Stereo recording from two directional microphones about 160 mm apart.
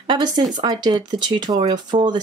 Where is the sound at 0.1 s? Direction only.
25° right (ahead or behind).